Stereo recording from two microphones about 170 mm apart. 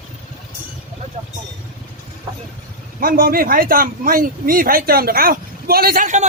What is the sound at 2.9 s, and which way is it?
Speech, 60° right (ahead or behind).